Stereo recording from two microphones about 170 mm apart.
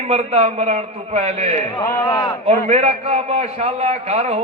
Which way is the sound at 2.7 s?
40° right (ahead or behind).